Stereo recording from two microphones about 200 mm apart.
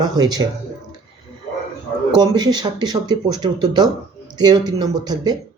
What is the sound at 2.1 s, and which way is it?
Speech, 20° right (ahead or behind).